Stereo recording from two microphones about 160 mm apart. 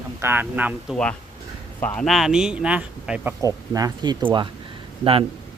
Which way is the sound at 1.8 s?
5° left (ahead or behind).